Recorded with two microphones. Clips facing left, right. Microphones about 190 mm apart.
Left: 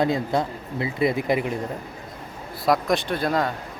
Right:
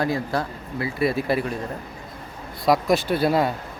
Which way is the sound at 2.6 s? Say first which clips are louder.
Right 2 dB; centre (ahead or behind).